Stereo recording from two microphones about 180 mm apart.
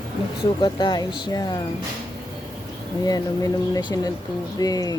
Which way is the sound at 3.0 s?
20° left (ahead or behind).